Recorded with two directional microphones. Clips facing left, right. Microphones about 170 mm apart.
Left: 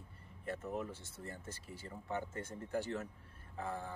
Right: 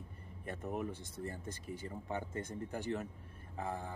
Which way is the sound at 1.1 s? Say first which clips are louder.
Right 5 dB; 15° right (ahead or behind).